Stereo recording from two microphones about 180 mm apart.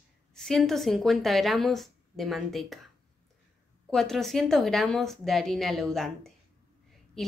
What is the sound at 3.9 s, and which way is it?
A woman's voice, centre (ahead or behind).